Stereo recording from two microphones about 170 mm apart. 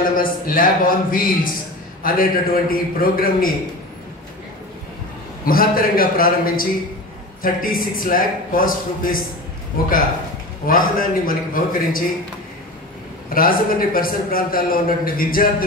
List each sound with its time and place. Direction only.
0.2 s a man's voice: 55° left (ahead or behind)
5.4 s a man's voice: 60° left (ahead or behind)
13.3 s a man's voice: 55° left (ahead or behind)